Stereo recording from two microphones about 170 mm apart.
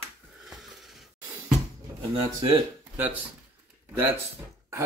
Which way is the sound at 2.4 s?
30° right (ahead or behind).